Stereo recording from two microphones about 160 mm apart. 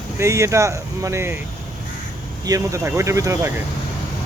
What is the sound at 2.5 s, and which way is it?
Speech, 20° right (ahead or behind).